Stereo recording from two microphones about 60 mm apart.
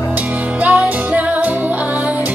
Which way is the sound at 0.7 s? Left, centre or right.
Right.